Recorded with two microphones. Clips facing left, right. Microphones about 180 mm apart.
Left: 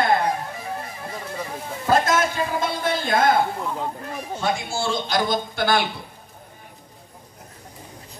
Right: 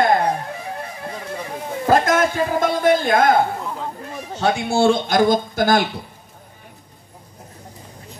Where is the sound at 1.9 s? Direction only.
50° right (ahead or behind).